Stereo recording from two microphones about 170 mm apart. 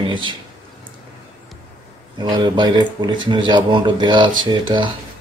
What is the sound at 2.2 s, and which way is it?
Speech, 25° right (ahead or behind).